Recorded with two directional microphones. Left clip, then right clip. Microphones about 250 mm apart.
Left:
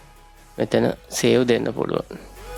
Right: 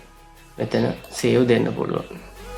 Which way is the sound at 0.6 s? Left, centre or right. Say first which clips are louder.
Left 3 dB; left.